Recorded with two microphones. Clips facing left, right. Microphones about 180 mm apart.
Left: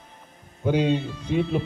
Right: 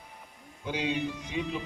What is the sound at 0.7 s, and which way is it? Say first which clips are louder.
Speech: left 10 dB; 55° left (ahead or behind).